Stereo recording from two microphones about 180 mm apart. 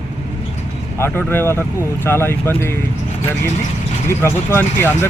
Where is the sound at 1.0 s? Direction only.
15° left (ahead or behind).